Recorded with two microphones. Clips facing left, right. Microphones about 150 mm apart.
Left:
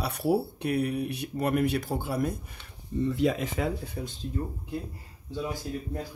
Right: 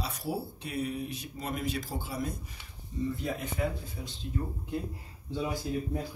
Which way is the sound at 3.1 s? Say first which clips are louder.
Left 8 dB; 90° left.